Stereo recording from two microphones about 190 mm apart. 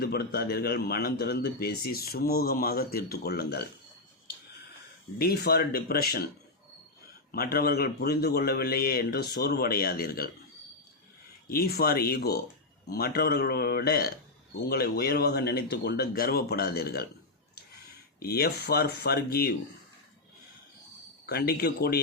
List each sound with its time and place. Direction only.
0.0 s speech: 55° left (ahead or behind)
5.2 s speech: 55° left (ahead or behind)
7.3 s speech: 55° left (ahead or behind)
11.4 s speech: 55° left (ahead or behind)
18.2 s speech: 55° left (ahead or behind)
21.2 s speech: 55° left (ahead or behind)